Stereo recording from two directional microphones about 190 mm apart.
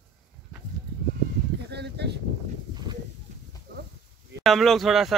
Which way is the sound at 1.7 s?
60° right (ahead or behind).